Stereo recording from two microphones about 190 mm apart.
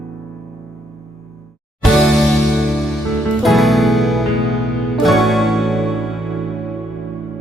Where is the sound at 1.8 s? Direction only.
Centre (ahead or behind).